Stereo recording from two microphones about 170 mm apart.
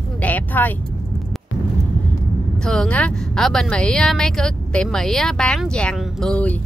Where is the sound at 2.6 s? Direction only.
5° left (ahead or behind).